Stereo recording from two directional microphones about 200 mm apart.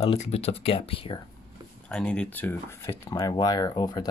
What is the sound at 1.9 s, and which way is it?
Speech, 5° left (ahead or behind).